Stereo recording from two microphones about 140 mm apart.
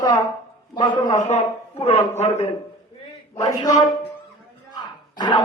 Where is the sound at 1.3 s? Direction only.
50° left (ahead or behind).